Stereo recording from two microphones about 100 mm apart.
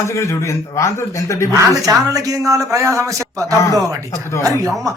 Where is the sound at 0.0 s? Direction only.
30° left (ahead or behind).